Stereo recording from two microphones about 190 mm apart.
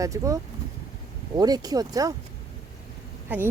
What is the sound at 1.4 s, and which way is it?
Speech, 20° right (ahead or behind).